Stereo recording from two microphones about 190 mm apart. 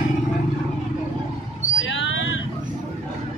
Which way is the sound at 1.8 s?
85° left.